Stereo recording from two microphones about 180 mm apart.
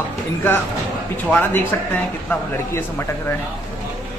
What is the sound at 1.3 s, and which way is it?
Speech, 10° left (ahead or behind).